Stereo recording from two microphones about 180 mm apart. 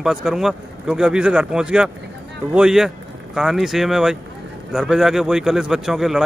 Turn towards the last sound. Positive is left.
turn(degrees=0)  # may be behind; listen again after turning